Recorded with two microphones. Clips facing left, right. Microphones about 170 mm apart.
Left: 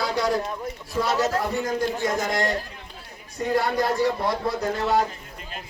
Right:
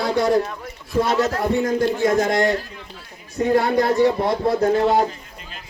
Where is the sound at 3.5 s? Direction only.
50° right (ahead or behind).